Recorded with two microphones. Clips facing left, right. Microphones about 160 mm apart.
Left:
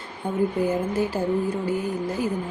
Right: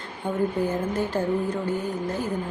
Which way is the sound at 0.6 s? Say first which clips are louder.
Left 2 dB; 10° left (ahead or behind).